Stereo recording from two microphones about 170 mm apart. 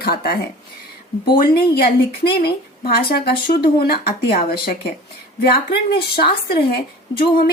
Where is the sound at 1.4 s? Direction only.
65° left (ahead or behind).